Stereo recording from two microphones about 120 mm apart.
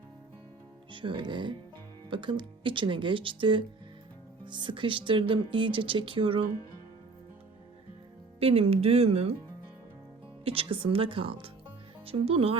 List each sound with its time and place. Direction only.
0.9 s speech: 45° right (ahead or behind)
8.4 s speech: 55° right (ahead or behind)
10.4 s speech: 50° right (ahead or behind)